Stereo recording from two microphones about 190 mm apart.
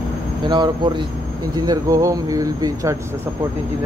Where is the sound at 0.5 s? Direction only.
25° right (ahead or behind).